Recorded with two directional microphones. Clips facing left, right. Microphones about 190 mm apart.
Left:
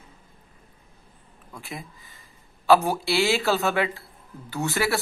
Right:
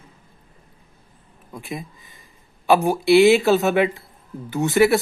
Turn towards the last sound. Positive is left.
turn(degrees=-20)  # may be behind; listen again after turning